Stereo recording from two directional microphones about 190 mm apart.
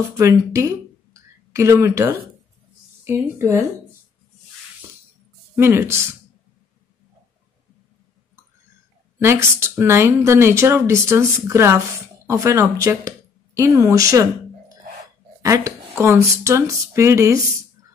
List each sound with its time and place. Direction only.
0.2 s a woman's voice: 15° right (ahead or behind)
5.6 s speech: 15° right (ahead or behind)
9.2 s speech: 15° right (ahead or behind)
15.4 s speech: 15° right (ahead or behind)